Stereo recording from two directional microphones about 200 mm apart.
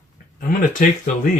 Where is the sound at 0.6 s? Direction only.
40° left (ahead or behind).